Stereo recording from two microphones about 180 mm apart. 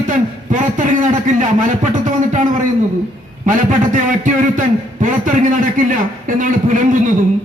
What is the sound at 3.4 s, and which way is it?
A man's voice, 45° right (ahead or behind).